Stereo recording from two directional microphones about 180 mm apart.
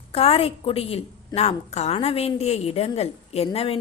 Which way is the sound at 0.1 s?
35° left (ahead or behind).